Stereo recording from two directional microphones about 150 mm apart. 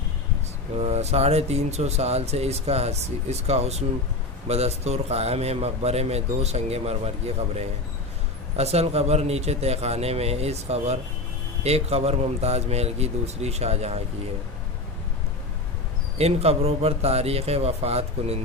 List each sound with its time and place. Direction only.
0.7 s speech: 45° right (ahead or behind)
16.2 s speech: 45° right (ahead or behind)